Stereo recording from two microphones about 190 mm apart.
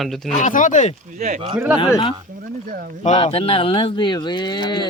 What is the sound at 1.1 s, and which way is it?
Speech, 40° right (ahead or behind).